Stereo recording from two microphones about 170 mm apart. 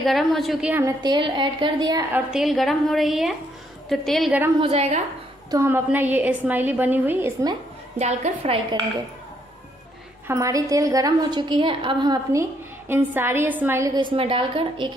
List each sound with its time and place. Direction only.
0.0 s a woman's voice: centre (ahead or behind)
1.0 s a woman's voice: 25° right (ahead or behind)
2.1 s a woman's voice: centre (ahead or behind)
4.6 s a woman's voice: 35° right (ahead or behind)
5.5 s a woman's voice: 15° right (ahead or behind)
8.0 s a woman's voice: 40° right (ahead or behind)
10.2 s a woman's voice: 20° right (ahead or behind)
14.1 s a woman's voice: 30° right (ahead or behind)